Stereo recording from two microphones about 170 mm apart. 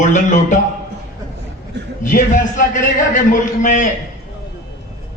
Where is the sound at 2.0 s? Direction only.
50° left (ahead or behind).